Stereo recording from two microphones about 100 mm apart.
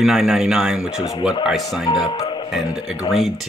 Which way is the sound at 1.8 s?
40° left (ahead or behind).